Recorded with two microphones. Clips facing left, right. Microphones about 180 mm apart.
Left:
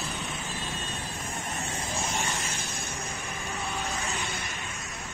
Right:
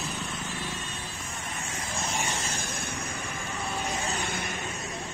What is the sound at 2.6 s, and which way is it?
Vehicle, 55° right (ahead or behind).